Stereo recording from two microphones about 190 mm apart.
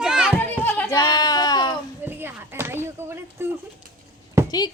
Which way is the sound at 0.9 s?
20° left (ahead or behind).